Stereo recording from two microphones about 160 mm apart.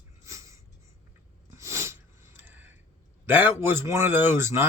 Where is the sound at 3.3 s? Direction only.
10° right (ahead or behind).